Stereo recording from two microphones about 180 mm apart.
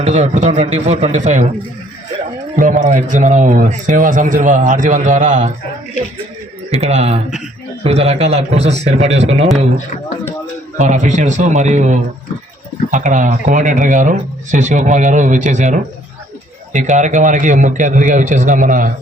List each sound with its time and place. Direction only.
0.0 s a man's voice: 40° right (ahead or behind)
2.6 s a man's voice: 45° right (ahead or behind)
6.7 s a man's voice: 35° right (ahead or behind)
10.8 s a man's voice: 40° right (ahead or behind)